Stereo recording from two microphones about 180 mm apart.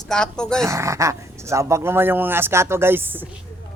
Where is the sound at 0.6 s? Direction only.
15° right (ahead or behind).